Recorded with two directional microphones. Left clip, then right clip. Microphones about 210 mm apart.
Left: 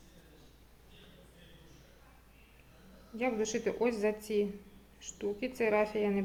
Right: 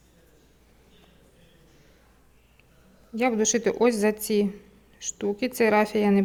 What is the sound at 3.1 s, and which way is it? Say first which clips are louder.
Speech: right 10 dB; 55° right (ahead or behind).